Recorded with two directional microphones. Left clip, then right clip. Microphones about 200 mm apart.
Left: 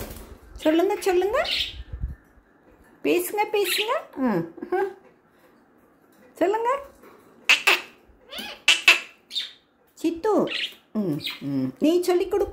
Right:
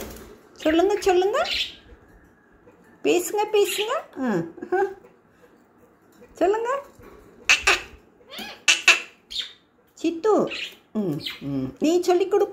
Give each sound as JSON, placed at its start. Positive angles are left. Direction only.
{"t": 0.6, "sound": "speech", "side_deg": 10}
{"t": 3.0, "sound": "speech", "side_deg": 5}
{"t": 3.6, "sound": "a child's voice", "side_deg": 20}
{"t": 3.9, "sound": "speech", "side_deg": 5}
{"t": 6.3, "sound": "speech", "side_deg": 10}
{"t": 7.4, "sound": "squawk", "side_deg": 5}
{"t": 8.7, "sound": "a sound", "side_deg": 5}
{"t": 9.9, "sound": "speech", "side_deg": 10}